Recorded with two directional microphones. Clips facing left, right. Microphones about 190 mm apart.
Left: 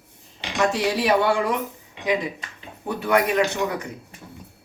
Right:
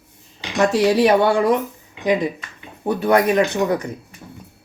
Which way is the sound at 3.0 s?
35° right (ahead or behind).